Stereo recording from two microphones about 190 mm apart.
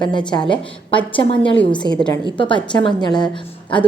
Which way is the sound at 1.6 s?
5° left (ahead or behind).